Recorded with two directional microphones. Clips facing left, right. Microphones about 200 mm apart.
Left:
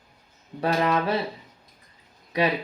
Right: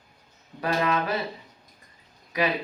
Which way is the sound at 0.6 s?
30° left (ahead or behind).